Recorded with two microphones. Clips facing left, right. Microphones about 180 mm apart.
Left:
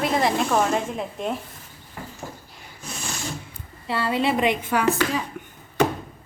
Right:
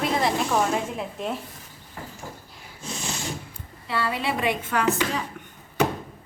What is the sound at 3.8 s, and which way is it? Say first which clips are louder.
A woman's voice: left 4 dB; 30° left (ahead or behind).